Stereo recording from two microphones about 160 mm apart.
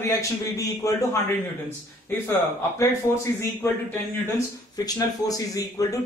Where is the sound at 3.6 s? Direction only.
15° left (ahead or behind).